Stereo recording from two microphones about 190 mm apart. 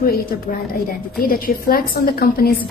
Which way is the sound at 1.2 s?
50° left (ahead or behind).